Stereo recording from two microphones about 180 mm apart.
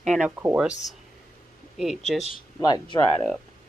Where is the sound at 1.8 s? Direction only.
Centre (ahead or behind).